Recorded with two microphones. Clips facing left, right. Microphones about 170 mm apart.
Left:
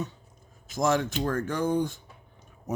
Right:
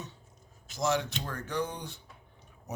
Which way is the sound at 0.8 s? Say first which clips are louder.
Left 5 dB; 50° left (ahead or behind).